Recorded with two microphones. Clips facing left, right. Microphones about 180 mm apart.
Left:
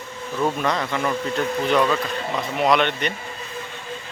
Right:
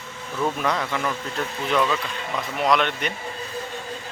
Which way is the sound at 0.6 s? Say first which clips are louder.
Left 2 dB; 5° right (ahead or behind).